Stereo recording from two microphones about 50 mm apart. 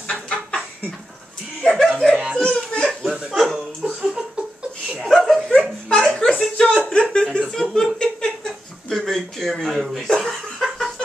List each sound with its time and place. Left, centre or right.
1.6 s speech: centre
2.3 s a sound: centre
3.8 s a sound: right
4.9 s dog: centre
6.3 s speech: centre
7.7 s chuckle: centre